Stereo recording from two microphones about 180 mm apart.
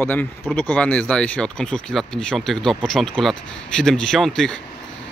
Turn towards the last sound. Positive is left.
turn(degrees=5)  # may be behind; listen again after turning